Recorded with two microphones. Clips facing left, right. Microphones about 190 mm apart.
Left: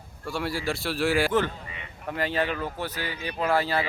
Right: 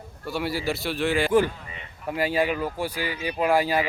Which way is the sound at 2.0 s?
10° right (ahead or behind).